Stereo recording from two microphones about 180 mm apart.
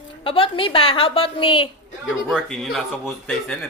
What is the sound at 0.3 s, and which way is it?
A woman's voice, 30° left (ahead or behind).